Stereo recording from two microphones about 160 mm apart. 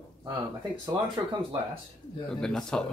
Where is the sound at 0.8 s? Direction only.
30° right (ahead or behind).